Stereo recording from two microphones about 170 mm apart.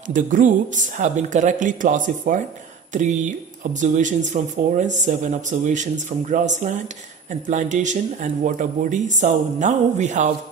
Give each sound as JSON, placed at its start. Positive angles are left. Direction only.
{"t": 0.1, "sound": "speech", "side_deg": -50}